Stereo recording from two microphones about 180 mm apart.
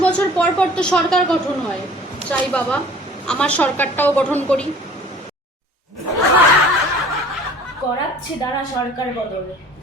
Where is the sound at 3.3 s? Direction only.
5° left (ahead or behind).